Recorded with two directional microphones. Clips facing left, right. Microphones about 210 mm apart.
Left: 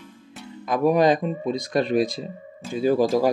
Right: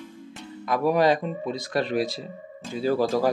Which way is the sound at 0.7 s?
20° left (ahead or behind).